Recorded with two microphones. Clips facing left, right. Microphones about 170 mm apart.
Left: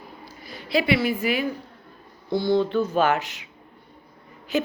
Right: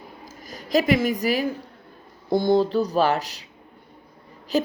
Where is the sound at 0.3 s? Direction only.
40° right (ahead or behind).